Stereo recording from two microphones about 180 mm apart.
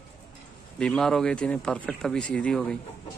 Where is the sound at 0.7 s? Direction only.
5° left (ahead or behind).